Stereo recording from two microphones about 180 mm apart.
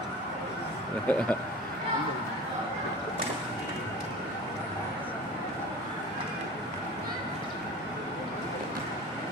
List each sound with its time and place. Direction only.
1.0 s speech: 10° left (ahead or behind)